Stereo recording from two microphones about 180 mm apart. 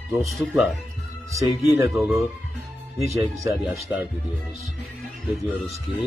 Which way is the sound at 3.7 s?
10° right (ahead or behind).